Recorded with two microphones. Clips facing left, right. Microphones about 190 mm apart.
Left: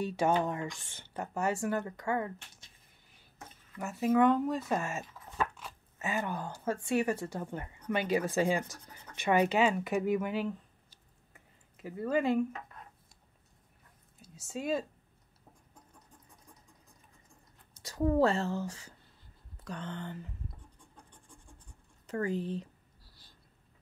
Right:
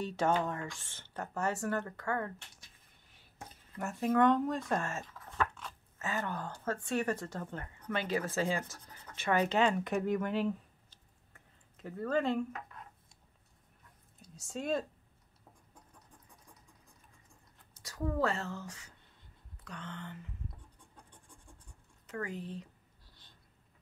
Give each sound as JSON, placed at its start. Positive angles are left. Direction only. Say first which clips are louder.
{"t": 0.0, "sound": "speech", "louder": "left 2 dB", "side_deg": 10}
{"t": 3.7, "sound": "speech", "louder": "left 2 dB", "side_deg": 5}
{"t": 14.2, "sound": "speech", "louder": "left 2 dB", "side_deg": 5}
{"t": 17.8, "sound": "a woman's voice", "louder": "left 6 dB", "side_deg": 25}
{"t": 22.0, "sound": "speech", "louder": "left 7 dB", "side_deg": 30}